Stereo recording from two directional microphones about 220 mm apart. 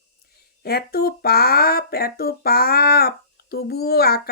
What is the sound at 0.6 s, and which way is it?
Speech, 45° left (ahead or behind).